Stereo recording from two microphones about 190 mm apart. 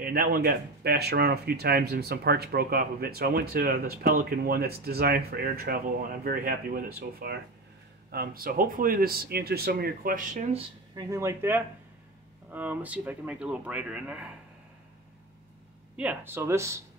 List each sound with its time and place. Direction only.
0.0 s speech: 50° right (ahead or behind)
11.0 s speech: 15° right (ahead or behind)
16.0 s speech: 10° right (ahead or behind)